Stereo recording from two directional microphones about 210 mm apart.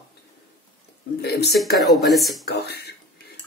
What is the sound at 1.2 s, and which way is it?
Speech, 50° left (ahead or behind).